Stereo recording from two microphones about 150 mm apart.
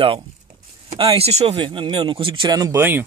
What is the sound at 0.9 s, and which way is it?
Speech, 40° right (ahead or behind).